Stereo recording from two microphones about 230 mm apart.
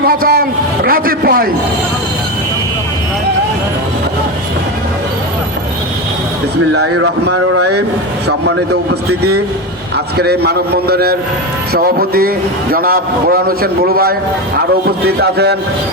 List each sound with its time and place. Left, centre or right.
0.1 s a man's voice: right
6.8 s speech: right
10.2 s a man's voice: right